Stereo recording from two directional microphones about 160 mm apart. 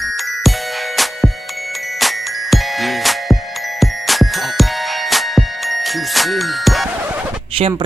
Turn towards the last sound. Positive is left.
turn(degrees=-35)  # may be behind; listen again after turning